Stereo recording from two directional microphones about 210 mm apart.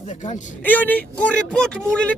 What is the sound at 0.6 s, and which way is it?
A man's voice, 10° left (ahead or behind).